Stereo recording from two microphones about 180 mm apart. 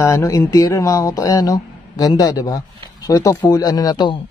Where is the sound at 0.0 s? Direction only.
15° left (ahead or behind).